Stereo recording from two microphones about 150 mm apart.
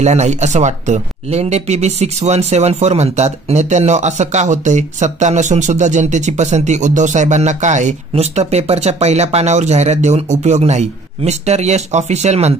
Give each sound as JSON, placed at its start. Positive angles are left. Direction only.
{"t": 0.0, "sound": "speech", "side_deg": -45}